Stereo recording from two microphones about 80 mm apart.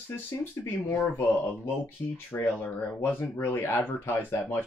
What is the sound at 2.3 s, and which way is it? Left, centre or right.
Speech, left.